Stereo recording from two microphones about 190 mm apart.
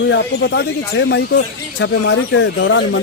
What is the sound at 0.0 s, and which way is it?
Speech, 65° left (ahead or behind).